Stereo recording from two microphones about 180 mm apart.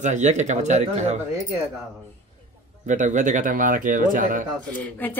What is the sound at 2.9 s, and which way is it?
Speech, 45° right (ahead or behind).